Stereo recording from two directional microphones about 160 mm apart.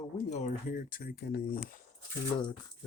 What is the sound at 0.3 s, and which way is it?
Speech, 50° left (ahead or behind).